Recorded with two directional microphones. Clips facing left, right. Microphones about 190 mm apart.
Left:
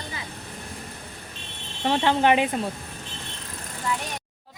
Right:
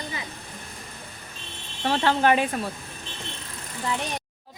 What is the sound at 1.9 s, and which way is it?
Speech, 15° left (ahead or behind).